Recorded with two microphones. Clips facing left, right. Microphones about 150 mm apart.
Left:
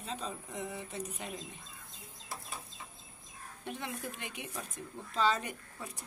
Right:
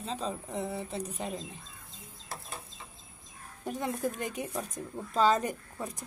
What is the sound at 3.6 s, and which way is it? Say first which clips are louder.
Speech: right 8 dB; 40° right (ahead or behind).